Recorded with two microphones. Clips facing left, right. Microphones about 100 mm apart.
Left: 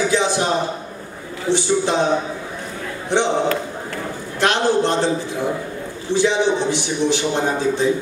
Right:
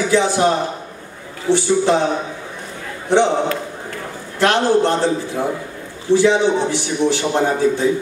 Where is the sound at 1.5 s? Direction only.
20° left (ahead or behind).